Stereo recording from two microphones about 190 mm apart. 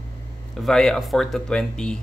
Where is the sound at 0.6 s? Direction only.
5° left (ahead or behind).